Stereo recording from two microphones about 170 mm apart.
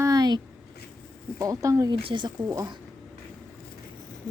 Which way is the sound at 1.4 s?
20° right (ahead or behind).